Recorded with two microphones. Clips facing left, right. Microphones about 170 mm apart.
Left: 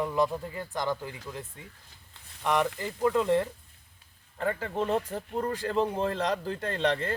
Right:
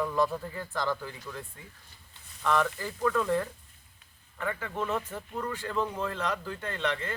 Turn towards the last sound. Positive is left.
turn(degrees=35)  # may be behind; listen again after turning